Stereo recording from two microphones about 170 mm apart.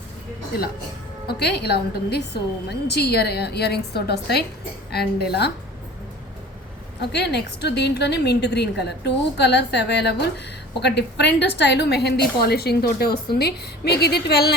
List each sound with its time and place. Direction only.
1.3 s a woman's voice: 75° left (ahead or behind)
7.0 s a woman's voice: 80° left